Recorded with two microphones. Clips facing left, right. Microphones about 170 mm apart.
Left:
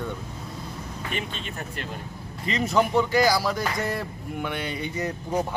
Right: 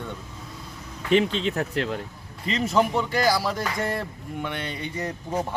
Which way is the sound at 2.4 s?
Centre (ahead or behind).